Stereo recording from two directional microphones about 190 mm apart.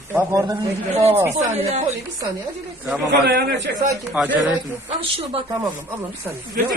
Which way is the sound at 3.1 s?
60° right (ahead or behind).